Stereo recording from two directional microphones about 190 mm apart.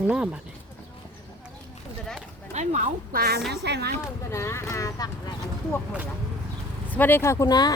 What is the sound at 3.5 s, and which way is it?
Speech, 60° right (ahead or behind).